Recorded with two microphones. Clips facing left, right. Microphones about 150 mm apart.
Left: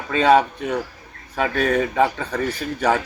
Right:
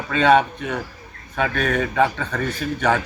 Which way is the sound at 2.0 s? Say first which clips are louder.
Even; 10° left (ahead or behind).